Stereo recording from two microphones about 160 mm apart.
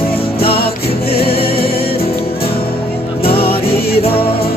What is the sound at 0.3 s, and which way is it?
Music, 75° left (ahead or behind).